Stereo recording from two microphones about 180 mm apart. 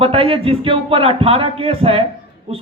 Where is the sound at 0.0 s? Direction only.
30° right (ahead or behind).